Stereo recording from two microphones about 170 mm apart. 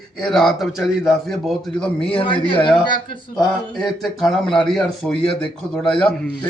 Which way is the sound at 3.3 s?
Centre (ahead or behind).